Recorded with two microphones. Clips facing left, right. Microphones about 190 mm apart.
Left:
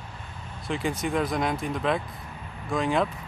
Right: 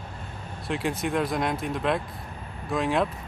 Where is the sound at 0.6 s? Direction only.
Centre (ahead or behind).